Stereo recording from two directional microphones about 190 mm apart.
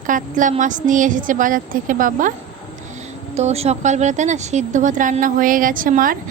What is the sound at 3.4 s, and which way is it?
A woman's voice, 35° right (ahead or behind).